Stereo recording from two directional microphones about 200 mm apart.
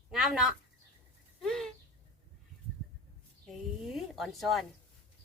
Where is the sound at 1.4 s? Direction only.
Centre (ahead or behind).